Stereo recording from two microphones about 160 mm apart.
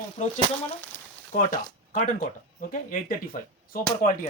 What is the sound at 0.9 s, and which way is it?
Frying, 15° left (ahead or behind).